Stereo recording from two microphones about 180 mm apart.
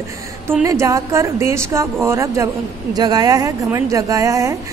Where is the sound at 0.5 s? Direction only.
15° right (ahead or behind).